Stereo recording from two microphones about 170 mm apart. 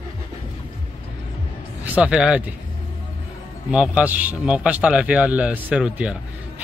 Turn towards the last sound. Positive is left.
turn(degrees=-5)  # may be behind; listen again after turning